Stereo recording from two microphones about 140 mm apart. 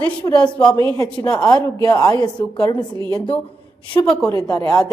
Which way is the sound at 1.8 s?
25° left (ahead or behind).